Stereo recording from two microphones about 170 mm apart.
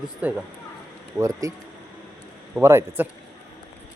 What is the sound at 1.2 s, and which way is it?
Speech, 20° right (ahead or behind).